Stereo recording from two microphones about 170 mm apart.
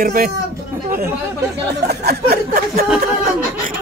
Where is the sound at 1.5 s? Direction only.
70° right (ahead or behind).